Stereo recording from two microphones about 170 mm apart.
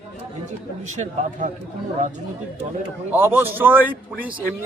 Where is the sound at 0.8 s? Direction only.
45° right (ahead or behind).